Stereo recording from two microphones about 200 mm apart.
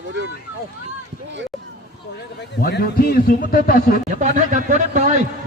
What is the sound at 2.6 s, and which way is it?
A man's voice, 50° left (ahead or behind).